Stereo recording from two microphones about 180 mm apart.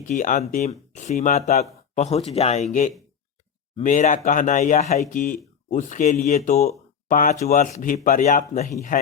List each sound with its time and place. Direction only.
0.0 s speech: 45° left (ahead or behind)
3.8 s speech: 45° left (ahead or behind)
6.7 s a sound: 50° left (ahead or behind)
7.4 s speech: 40° left (ahead or behind)